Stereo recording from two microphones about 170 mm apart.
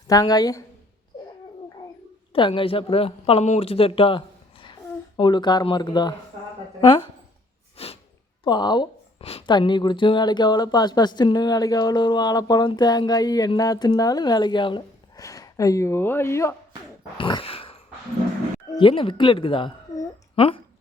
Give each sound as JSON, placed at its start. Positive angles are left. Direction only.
{"t": 0.1, "sound": "a woman's voice", "side_deg": 20}
{"t": 2.3, "sound": "speech", "side_deg": 30}
{"t": 7.8, "sound": "a sound", "side_deg": 35}
{"t": 8.4, "sound": "a woman's voice", "side_deg": 25}
{"t": 17.2, "sound": "a sound", "side_deg": 30}
{"t": 18.7, "sound": "a woman's voice", "side_deg": 30}